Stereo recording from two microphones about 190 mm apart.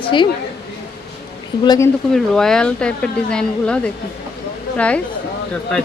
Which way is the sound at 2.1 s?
5° left (ahead or behind).